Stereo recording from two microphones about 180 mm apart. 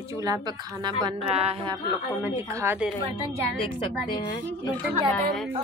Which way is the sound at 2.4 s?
15° right (ahead or behind).